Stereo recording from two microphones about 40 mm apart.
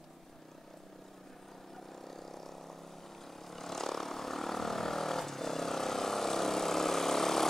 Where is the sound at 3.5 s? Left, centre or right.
Centre.